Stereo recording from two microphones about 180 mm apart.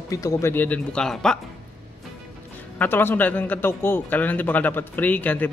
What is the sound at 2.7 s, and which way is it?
A man's voice, 10° left (ahead or behind).